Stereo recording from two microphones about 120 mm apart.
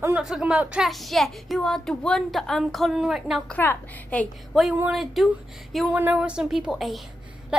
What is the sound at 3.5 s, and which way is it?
Speech, 15° left (ahead or behind).